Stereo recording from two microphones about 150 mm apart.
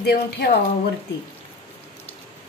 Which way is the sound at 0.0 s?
90° left.